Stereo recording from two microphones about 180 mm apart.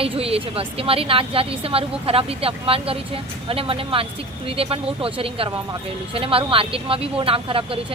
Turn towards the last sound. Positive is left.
turn(degrees=-30)  # may be behind; listen again after turning